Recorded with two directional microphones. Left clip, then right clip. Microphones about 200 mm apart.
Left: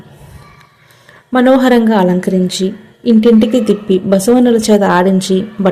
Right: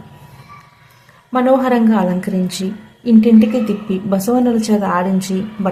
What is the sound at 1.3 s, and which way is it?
A woman's voice, 25° left (ahead or behind).